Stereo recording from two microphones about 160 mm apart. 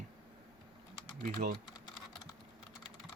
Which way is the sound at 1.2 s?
55° right (ahead or behind).